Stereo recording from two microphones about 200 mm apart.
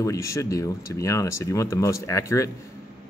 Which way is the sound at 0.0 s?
15° left (ahead or behind).